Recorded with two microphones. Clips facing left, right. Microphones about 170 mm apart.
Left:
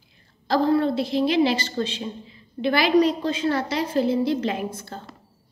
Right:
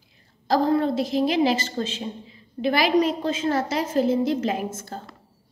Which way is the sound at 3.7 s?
35° left (ahead or behind).